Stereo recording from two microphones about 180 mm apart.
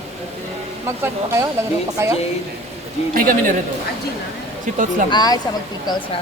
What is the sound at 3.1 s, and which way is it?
Speech, 50° right (ahead or behind).